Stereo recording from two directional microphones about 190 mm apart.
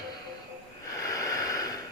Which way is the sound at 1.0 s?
20° left (ahead or behind).